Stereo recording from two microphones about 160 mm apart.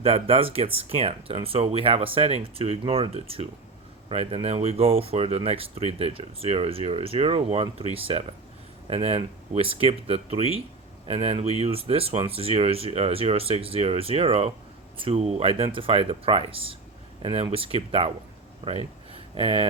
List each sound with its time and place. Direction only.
0.0 s speech: 35° right (ahead or behind)